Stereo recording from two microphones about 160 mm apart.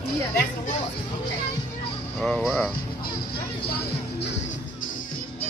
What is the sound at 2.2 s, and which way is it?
Speech, 5° left (ahead or behind).